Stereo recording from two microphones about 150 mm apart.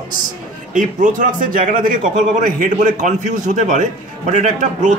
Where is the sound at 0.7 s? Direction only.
60° right (ahead or behind).